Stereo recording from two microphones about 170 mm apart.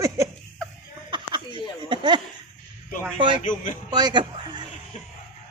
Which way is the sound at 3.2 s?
30° right (ahead or behind).